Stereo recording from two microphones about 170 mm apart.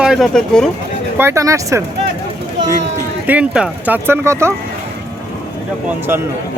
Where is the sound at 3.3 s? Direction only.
5° right (ahead or behind).